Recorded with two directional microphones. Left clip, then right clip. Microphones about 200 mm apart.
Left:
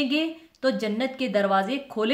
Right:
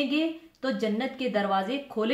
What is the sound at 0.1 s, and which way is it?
Speech, 50° left (ahead or behind).